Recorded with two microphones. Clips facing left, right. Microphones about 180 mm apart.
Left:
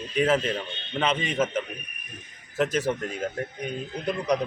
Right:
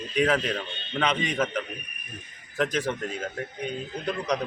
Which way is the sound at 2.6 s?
5° left (ahead or behind).